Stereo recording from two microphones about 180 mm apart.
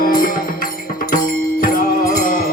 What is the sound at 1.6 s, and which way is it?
Music, 50° left (ahead or behind).